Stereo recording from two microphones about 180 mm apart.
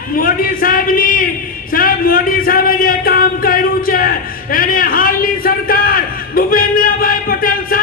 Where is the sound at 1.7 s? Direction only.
55° left (ahead or behind).